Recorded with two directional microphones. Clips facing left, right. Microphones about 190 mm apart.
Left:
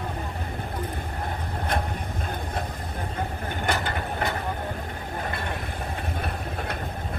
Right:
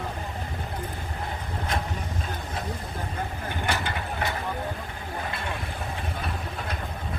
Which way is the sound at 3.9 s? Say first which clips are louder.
Left 2 dB; 50° left (ahead or behind).